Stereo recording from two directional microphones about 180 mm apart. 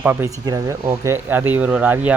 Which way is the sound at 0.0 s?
10° right (ahead or behind).